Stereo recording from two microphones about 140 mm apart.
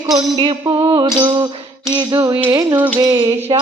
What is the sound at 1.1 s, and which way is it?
Music, 35° right (ahead or behind).